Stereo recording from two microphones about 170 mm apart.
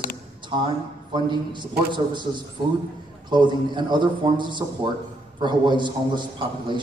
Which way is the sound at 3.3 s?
25° right (ahead or behind).